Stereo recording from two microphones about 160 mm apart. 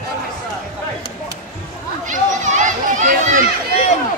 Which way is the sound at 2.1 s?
50° right (ahead or behind).